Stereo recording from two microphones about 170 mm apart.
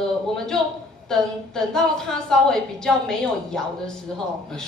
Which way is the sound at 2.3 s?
5° left (ahead or behind).